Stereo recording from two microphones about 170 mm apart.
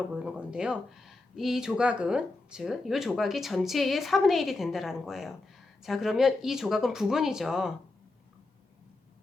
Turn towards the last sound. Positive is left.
turn(degrees=-5)  # may be behind; listen again after turning